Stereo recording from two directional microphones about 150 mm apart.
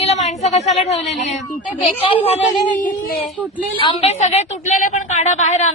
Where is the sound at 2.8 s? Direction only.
65° left (ahead or behind).